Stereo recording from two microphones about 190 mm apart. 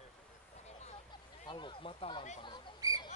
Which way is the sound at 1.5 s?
25° left (ahead or behind).